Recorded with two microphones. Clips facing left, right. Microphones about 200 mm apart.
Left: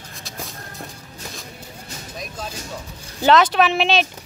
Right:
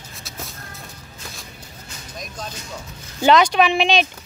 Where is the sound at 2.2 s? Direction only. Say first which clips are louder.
Left 1 dB; 5° left (ahead or behind).